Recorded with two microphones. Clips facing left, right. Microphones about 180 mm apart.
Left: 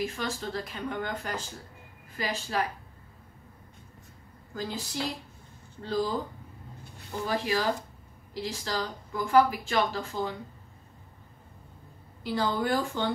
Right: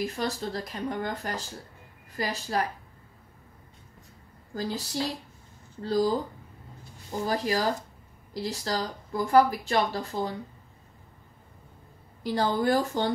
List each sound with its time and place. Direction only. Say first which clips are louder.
0.0 s speech: right 2 dB; 35° right (ahead or behind)
4.6 s speech: right 3 dB; 40° right (ahead or behind)
5.9 s speech: right 4 dB; 40° right (ahead or behind)
7.2 s speech: right 1 dB; 35° right (ahead or behind)
12.2 s speech: right 2 dB; 40° right (ahead or behind)